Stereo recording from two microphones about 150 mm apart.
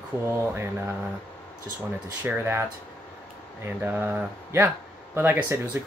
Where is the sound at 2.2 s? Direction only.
10° right (ahead or behind).